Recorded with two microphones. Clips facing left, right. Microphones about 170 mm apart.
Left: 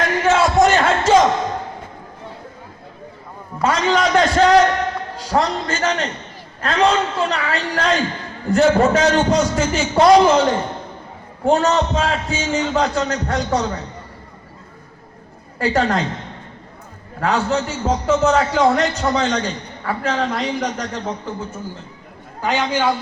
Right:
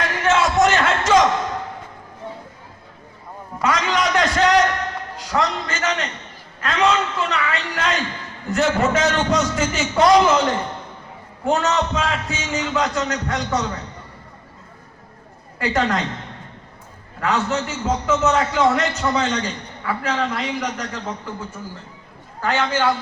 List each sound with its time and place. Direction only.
0.3 s a sound: 35° left (ahead or behind)
3.6 s a man's voice: 30° left (ahead or behind)
15.5 s a man's voice: 30° left (ahead or behind)
17.2 s a man's voice: 35° left (ahead or behind)
22.4 s a man's voice: 15° left (ahead or behind)